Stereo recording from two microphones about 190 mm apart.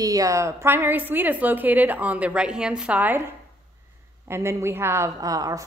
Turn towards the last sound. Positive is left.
turn(degrees=-20)  # may be behind; listen again after turning